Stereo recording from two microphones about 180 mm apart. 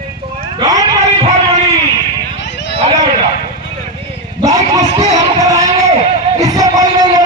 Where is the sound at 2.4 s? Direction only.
80° left.